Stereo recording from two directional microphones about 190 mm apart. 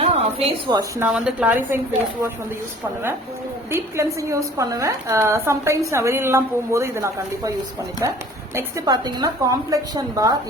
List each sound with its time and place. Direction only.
0.0 s a sound: 30° right (ahead or behind)
0.8 s a woman's voice: 10° right (ahead or behind)
3.7 s a woman's voice: 15° right (ahead or behind)